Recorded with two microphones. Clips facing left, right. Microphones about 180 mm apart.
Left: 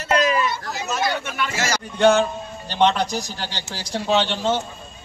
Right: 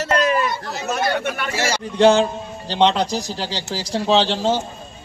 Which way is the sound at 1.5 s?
30° right (ahead or behind).